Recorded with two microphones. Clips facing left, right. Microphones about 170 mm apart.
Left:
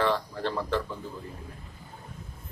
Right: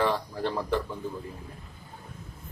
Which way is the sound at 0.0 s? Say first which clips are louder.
Even; 15° right (ahead or behind).